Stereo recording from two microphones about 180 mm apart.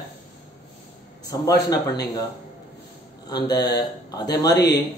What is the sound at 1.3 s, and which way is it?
Speech, 20° left (ahead or behind).